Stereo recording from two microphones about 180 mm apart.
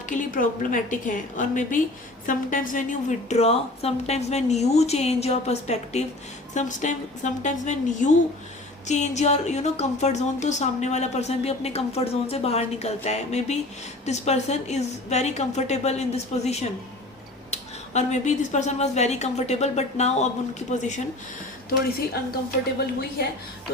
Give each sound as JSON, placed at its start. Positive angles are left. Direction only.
{"t": 0.0, "sound": "a woman's voice", "side_deg": 45}